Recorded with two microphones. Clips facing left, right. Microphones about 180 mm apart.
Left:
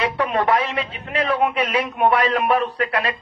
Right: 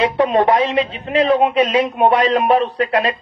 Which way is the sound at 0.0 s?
20° right (ahead or behind).